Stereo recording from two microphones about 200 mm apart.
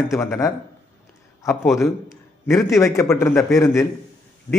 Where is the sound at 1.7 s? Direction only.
15° left (ahead or behind).